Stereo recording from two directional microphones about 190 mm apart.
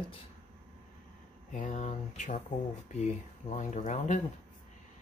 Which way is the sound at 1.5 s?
40° left (ahead or behind).